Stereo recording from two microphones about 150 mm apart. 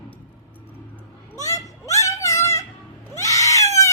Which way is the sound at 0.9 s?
20° left (ahead or behind).